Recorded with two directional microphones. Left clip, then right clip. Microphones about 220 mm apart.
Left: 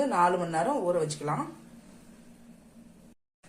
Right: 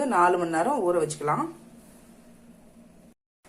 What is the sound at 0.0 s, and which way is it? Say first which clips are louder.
Speech: right 3 dB; 25° right (ahead or behind).